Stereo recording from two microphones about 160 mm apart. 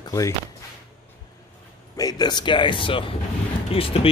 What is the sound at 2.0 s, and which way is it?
Speech, 25° left (ahead or behind).